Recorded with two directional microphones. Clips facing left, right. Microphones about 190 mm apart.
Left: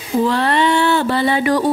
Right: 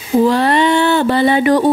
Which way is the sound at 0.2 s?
15° right (ahead or behind).